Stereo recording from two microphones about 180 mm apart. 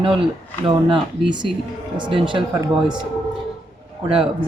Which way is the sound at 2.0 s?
30° right (ahead or behind).